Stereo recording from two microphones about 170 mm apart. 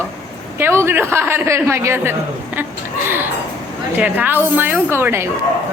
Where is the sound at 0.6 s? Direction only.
15° right (ahead or behind).